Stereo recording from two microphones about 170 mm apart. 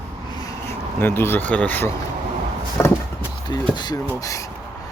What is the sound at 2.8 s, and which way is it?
Speech, 15° left (ahead or behind).